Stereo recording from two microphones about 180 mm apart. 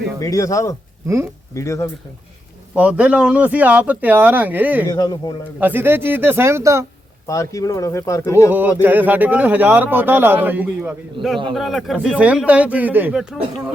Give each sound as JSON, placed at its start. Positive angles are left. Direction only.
{"t": 0.2, "sound": "speech", "side_deg": 20}
{"t": 1.0, "sound": "a man's voice", "side_deg": -15}
{"t": 1.5, "sound": "speech", "side_deg": 15}
{"t": 2.7, "sound": "a man's voice", "side_deg": -10}
{"t": 4.9, "sound": "speech", "side_deg": 20}
{"t": 5.5, "sound": "a man's voice", "side_deg": -10}
{"t": 7.3, "sound": "speech", "side_deg": 20}
{"t": 8.8, "sound": "a man's voice", "side_deg": -10}